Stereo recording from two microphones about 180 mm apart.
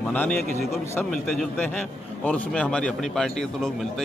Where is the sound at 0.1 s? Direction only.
5° left (ahead or behind).